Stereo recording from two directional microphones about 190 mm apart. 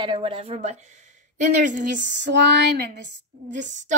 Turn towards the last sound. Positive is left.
turn(degrees=-40)  # may be behind; listen again after turning